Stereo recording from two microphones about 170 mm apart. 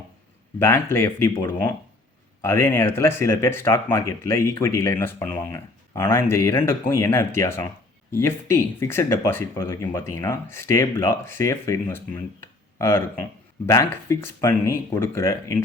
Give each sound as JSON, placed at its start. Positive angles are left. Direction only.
{"t": 0.6, "sound": "speech", "side_deg": 15}